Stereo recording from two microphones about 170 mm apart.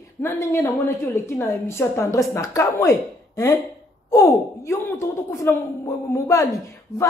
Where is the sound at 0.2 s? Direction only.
15° left (ahead or behind).